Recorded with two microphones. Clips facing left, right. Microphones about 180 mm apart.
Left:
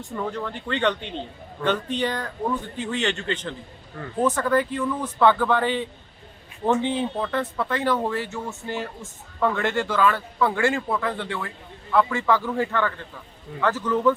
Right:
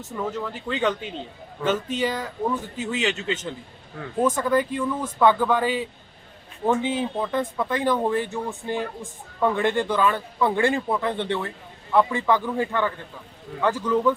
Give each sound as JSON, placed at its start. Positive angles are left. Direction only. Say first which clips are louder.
{"t": 0.2, "sound": "a man's voice", "louder": "right 1 dB", "side_deg": -5}